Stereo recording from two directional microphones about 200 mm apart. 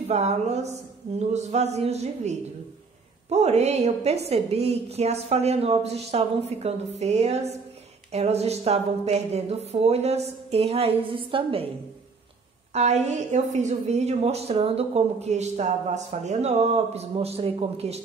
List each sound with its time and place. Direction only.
0.1 s a woman's voice: 35° right (ahead or behind)
12.7 s a woman's voice: 35° right (ahead or behind)